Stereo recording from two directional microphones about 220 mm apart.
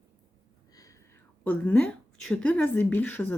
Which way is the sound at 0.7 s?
15° left (ahead or behind).